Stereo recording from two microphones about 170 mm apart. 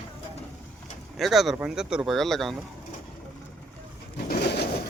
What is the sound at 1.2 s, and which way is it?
Speech, centre (ahead or behind).